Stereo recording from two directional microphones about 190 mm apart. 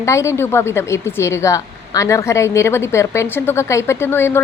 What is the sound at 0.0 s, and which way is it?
Speech, 15° left (ahead or behind).